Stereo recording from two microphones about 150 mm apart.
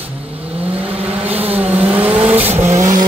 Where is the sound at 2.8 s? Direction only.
25° right (ahead or behind).